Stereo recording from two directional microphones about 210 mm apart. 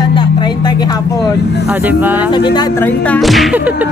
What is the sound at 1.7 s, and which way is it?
Speech, 10° right (ahead or behind).